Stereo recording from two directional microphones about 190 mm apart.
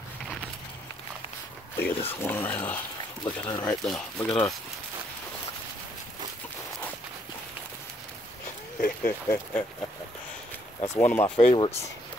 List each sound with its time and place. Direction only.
1.8 s speech: 10° left (ahead or behind)
3.8 s speech: centre (ahead or behind)
4.3 s speech: 15° left (ahead or behind)
9.0 s speech: 10° left (ahead or behind)
11.0 s speech: 10° left (ahead or behind)
11.2 s speech: 30° left (ahead or behind)